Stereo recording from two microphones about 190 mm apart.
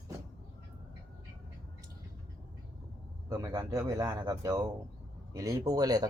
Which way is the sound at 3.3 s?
20° right (ahead or behind).